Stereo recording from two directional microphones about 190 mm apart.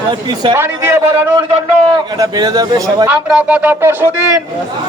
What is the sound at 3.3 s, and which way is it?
Speech, 5° right (ahead or behind).